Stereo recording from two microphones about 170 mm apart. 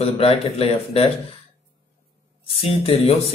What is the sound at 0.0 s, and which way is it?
Speech, 35° left (ahead or behind).